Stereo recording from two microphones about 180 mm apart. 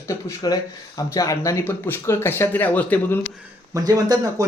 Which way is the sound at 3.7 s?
20° right (ahead or behind).